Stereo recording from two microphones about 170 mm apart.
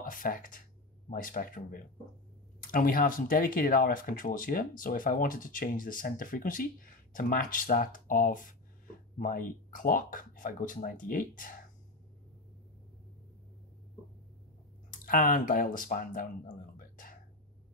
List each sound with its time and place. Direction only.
0.0 s speech: 55° left (ahead or behind)
14.9 s speech: 55° left (ahead or behind)
16.7 s a sound: 55° left (ahead or behind)